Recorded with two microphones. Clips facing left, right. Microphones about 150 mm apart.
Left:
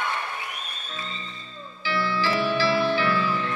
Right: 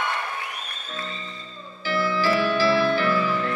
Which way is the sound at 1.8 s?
45° right (ahead or behind).